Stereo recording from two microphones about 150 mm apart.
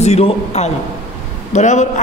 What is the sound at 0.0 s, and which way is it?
A man's voice, 45° left (ahead or behind).